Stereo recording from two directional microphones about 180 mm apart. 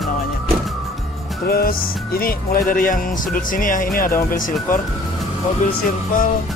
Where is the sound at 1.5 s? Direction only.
55° left (ahead or behind).